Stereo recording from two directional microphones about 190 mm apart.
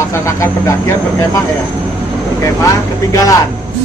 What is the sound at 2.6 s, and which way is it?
Speech, 20° left (ahead or behind).